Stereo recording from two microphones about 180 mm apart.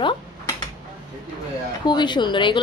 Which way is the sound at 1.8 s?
25° left (ahead or behind).